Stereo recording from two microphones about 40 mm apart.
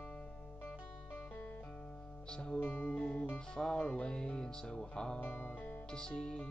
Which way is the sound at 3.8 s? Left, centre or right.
Left.